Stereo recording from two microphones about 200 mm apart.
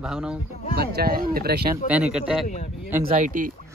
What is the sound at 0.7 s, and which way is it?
Speech, 50° right (ahead or behind).